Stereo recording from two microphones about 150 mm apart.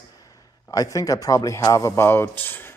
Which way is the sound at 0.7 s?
20° left (ahead or behind).